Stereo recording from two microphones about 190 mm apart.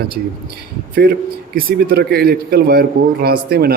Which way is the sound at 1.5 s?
50° right (ahead or behind).